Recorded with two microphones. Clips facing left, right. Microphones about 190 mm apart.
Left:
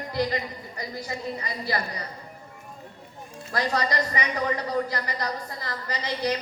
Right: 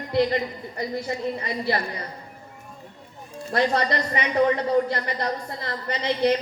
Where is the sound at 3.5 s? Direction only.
25° right (ahead or behind).